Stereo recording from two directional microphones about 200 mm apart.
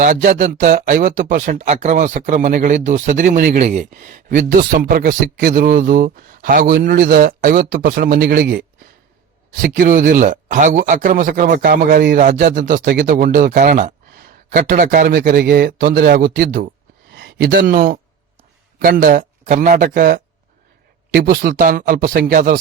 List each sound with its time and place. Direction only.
0.0 s speech: 40° right (ahead or behind)
18.8 s speech: 45° right (ahead or behind)